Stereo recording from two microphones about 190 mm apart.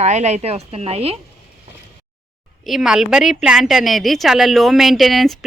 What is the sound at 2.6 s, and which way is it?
A woman's voice, centre (ahead or behind).